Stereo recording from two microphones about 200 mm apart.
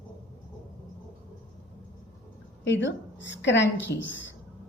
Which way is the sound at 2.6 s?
65° left (ahead or behind).